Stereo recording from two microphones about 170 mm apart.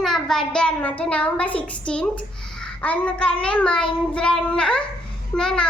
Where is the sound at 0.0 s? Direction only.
Centre (ahead or behind).